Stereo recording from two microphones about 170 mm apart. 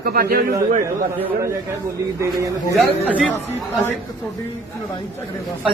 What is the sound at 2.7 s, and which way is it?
Speech, centre (ahead or behind).